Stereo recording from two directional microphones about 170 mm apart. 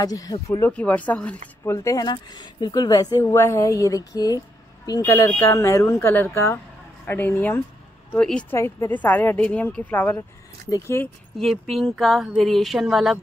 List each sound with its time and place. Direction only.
0.0 s speech: 20° left (ahead or behind)
0.7 s speech: 10° left (ahead or behind)
11.3 s speech: centre (ahead or behind)